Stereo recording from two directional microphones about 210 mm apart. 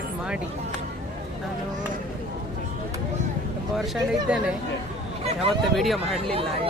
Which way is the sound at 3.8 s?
Centre (ahead or behind).